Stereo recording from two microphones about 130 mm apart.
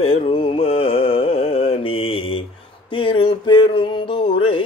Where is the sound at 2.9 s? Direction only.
40° left (ahead or behind).